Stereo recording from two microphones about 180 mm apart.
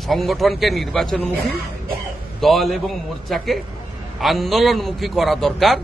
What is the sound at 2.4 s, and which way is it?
A man's voice, centre (ahead or behind).